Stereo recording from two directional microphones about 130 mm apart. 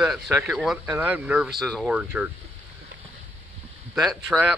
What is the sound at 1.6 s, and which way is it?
Speech, centre (ahead or behind).